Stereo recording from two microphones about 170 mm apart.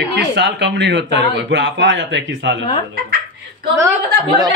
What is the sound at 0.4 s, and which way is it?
A man's voice, 90° right.